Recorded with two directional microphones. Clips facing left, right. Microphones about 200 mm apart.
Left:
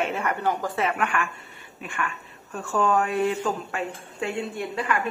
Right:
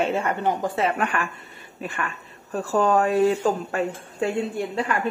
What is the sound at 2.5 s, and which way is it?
A woman's voice, 35° right (ahead or behind).